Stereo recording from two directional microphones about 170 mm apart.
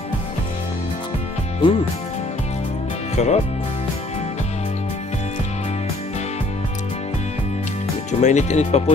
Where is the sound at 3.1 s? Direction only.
40° left (ahead or behind).